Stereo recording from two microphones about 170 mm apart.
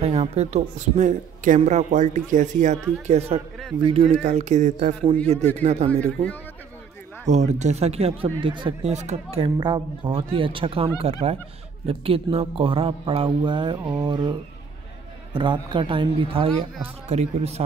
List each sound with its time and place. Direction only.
0.0 s a man's voice: 35° right (ahead or behind)
5.9 s a man's voice: 10° left (ahead or behind)
7.2 s speech: 40° right (ahead or behind); by 14.3 s 25° right (ahead or behind)
15.3 s a man's voice: 30° right (ahead or behind)